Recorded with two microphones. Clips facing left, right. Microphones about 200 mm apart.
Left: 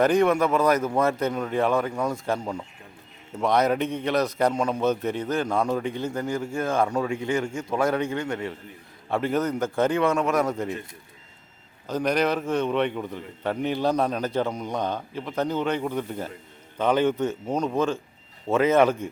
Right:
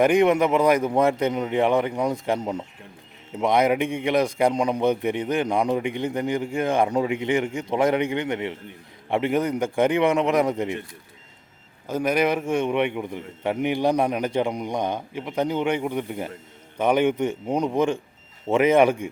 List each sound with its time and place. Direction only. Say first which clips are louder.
0.0 s a man's voice: right 2 dB; 15° right (ahead or behind)
11.9 s a man's voice: right 2 dB; 10° right (ahead or behind)